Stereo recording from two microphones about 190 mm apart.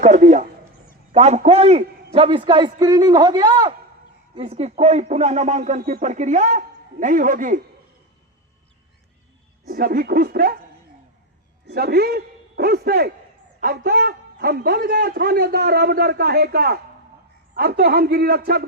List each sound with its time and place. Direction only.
0.0 s a sound: 40° right (ahead or behind)
1.1 s a man's voice: 35° right (ahead or behind)
9.6 s a man's voice: 50° right (ahead or behind)
11.6 s a man's voice: 55° right (ahead or behind)